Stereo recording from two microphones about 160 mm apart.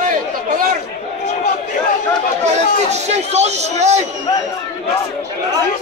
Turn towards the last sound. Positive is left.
turn(degrees=-45)  # may be behind; listen again after turning